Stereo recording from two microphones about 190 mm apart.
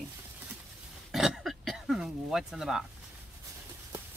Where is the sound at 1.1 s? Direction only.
Centre (ahead or behind).